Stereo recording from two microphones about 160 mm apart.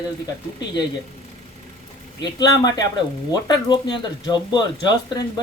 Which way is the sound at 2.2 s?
25° left (ahead or behind).